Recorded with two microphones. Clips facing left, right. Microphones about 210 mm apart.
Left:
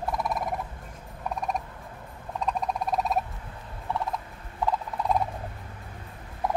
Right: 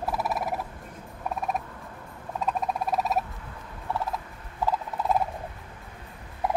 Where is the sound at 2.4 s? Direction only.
5° right (ahead or behind).